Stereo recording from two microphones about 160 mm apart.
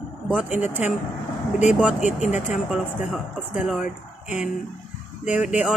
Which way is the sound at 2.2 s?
50° left (ahead or behind).